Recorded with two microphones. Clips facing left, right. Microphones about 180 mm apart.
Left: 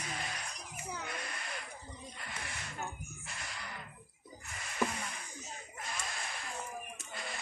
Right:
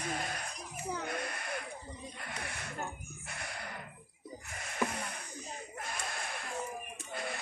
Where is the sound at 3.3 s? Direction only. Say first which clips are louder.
Right 4 dB; 55° right (ahead or behind).